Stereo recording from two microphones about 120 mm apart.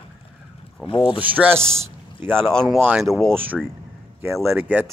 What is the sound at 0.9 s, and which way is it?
Speech, 45° left (ahead or behind).